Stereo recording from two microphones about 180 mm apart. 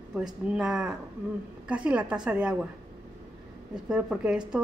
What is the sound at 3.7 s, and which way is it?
Speech, 5° right (ahead or behind).